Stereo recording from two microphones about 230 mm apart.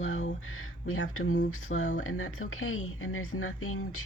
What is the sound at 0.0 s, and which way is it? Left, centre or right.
Speech, left.